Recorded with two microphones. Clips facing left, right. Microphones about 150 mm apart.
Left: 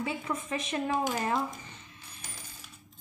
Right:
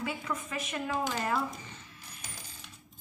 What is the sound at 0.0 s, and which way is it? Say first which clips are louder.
Speech: left 2 dB; 25° left (ahead or behind).